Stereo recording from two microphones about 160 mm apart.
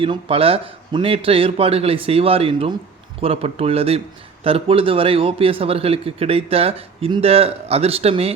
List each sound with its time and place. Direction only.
0.0 s speech: 35° right (ahead or behind)